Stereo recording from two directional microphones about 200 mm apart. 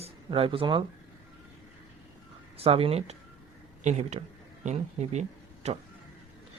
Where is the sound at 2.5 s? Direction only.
30° right (ahead or behind).